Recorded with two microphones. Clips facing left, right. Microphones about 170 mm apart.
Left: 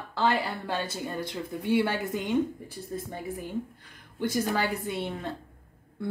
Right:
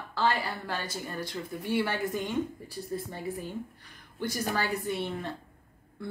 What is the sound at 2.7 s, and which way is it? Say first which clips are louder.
Speech: even; 15° left (ahead or behind).